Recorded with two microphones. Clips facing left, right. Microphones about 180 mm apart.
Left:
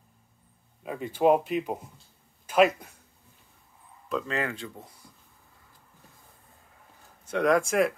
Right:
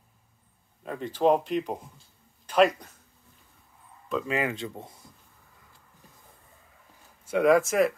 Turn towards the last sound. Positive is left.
turn(degrees=0)  # may be behind; listen again after turning